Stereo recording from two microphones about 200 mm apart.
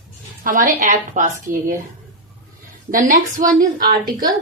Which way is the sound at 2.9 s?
40° right (ahead or behind).